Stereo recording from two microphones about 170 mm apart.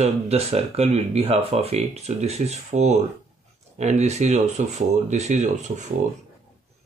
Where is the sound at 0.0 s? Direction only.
35° right (ahead or behind).